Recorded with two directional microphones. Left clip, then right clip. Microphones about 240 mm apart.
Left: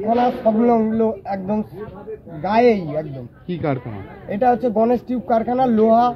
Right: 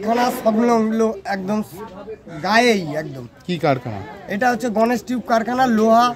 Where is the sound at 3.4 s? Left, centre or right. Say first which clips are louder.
Right 5 dB; right.